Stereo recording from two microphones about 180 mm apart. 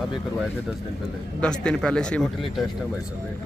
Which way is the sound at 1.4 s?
5° left (ahead or behind).